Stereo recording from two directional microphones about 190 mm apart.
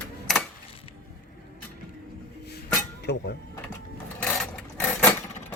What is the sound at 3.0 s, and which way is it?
Speech, 60° left (ahead or behind).